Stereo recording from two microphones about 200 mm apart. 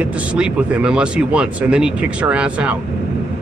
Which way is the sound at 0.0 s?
5° right (ahead or behind).